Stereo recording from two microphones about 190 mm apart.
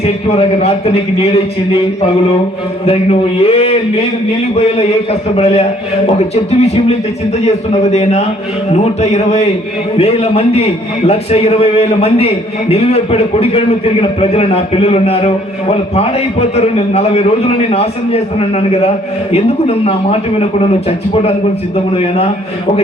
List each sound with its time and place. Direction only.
0.0 s a man's voice: 35° left (ahead or behind)
2.8 s a man's voice: 30° left (ahead or behind)
5.4 s a man's voice: 35° left (ahead or behind)